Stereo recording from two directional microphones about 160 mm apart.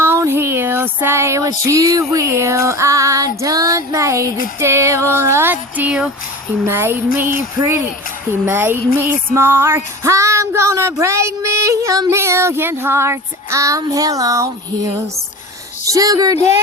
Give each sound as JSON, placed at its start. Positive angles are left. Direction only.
{"t": 0.0, "sound": "female singing", "side_deg": -15}
{"t": 4.6, "sound": "music", "side_deg": -15}
{"t": 15.9, "sound": "speech", "side_deg": -25}